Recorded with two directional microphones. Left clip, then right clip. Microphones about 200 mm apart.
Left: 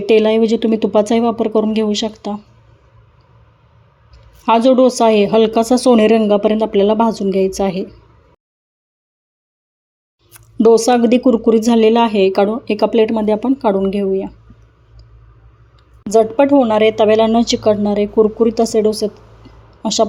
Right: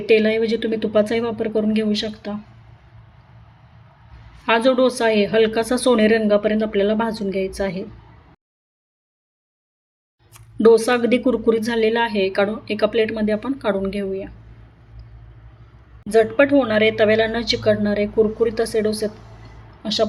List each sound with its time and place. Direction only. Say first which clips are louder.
0.0 s speech: left 5 dB; 30° left (ahead or behind)
4.4 s speech: left 5 dB; 30° left (ahead or behind)
10.6 s speech: left 4 dB; 30° left (ahead or behind)
16.0 s a woman's voice: left 4 dB; 30° left (ahead or behind)